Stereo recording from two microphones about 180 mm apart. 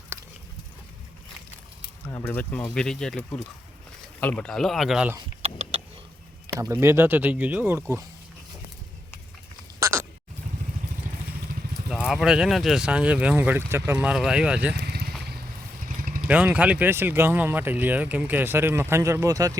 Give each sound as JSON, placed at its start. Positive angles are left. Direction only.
{"t": 0.1, "sound": "a sound", "side_deg": -15}
{"t": 2.0, "sound": "speech", "side_deg": 15}
{"t": 5.4, "sound": "a sound", "side_deg": -35}
{"t": 6.5, "sound": "speech", "side_deg": -15}
{"t": 9.8, "sound": "sheep", "side_deg": -15}
{"t": 11.9, "sound": "speech", "side_deg": -5}
{"t": 14.8, "sound": "vehicle", "side_deg": -65}
{"t": 16.2, "sound": "speech", "side_deg": -10}